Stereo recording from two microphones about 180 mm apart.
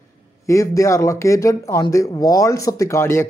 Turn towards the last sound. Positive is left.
turn(degrees=15)  # may be behind; listen again after turning